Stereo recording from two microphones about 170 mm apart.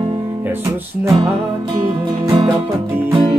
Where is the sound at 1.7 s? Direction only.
25° right (ahead or behind).